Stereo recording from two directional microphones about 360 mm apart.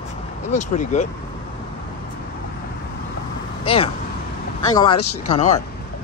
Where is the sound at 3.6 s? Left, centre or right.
Centre.